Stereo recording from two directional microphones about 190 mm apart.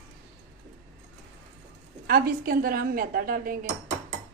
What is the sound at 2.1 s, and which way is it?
A woman's voice, 50° right (ahead or behind).